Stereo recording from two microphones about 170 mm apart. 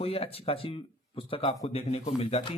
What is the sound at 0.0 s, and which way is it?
Speech, 35° left (ahead or behind).